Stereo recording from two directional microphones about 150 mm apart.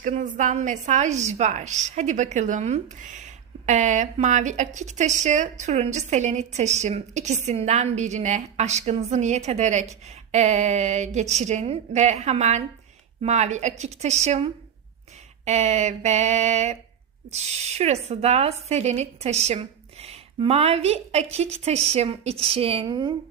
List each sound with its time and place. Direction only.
0.0 s a woman's voice: 55° right (ahead or behind); by 23.1 s 30° right (ahead or behind)